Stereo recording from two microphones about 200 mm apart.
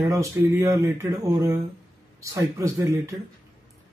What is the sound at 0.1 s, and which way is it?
Speech, 15° right (ahead or behind).